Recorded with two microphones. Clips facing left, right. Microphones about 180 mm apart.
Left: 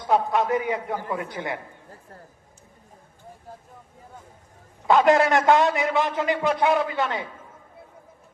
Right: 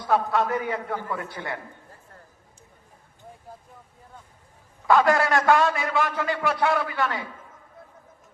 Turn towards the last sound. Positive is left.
turn(degrees=20)  # may be behind; listen again after turning